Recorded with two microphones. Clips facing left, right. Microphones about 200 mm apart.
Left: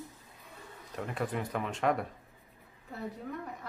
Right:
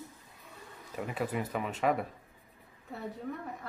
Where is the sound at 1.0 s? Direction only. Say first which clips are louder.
Right 1 dB; 5° right (ahead or behind).